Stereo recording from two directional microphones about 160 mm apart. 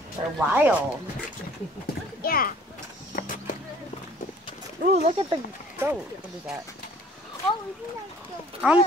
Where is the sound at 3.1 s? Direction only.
60° left (ahead or behind).